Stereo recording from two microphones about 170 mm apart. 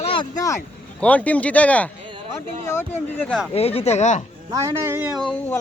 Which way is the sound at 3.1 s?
5° left (ahead or behind).